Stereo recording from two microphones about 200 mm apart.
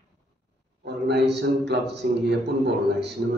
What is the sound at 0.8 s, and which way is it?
A man's voice, 55° right (ahead or behind).